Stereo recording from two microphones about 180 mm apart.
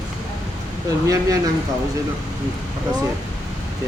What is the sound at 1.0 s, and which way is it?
Speech, 20° right (ahead or behind).